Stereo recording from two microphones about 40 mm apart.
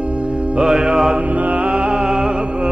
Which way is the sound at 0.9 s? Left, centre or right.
Centre.